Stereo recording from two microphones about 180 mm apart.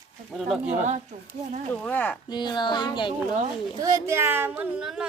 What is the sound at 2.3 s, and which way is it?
Speech, 25° left (ahead or behind).